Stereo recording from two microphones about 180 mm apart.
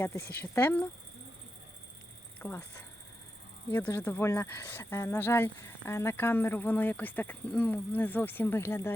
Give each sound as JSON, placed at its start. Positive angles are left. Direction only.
{"t": 0.0, "sound": "speech", "side_deg": 10}
{"t": 2.4, "sound": "speech", "side_deg": 10}